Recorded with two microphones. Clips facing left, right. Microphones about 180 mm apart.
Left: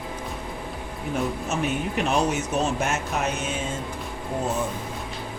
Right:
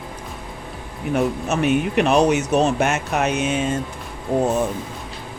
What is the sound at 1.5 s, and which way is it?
Speech, 70° right (ahead or behind).